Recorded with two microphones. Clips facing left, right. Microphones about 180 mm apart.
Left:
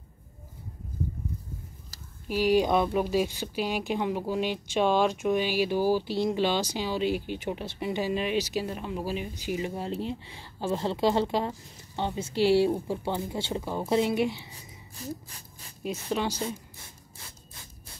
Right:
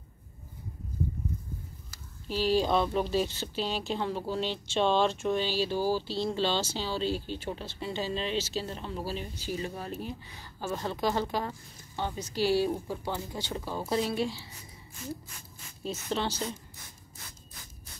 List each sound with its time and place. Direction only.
2.2 s a woman's voice: 15° left (ahead or behind)
15.0 s speech: 35° left (ahead or behind)
15.8 s a woman's voice: 10° left (ahead or behind)